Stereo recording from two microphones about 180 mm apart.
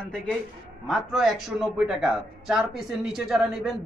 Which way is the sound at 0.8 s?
Centre (ahead or behind).